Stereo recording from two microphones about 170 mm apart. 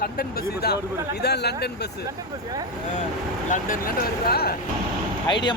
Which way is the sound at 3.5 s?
55° left (ahead or behind).